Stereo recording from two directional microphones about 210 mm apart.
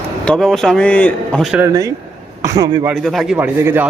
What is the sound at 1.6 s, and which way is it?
A man's voice, 15° right (ahead or behind).